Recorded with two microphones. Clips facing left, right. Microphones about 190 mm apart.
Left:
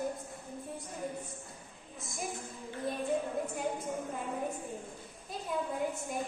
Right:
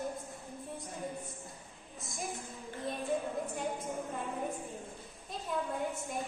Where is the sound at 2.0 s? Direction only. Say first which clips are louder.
Left 1 dB; centre (ahead or behind).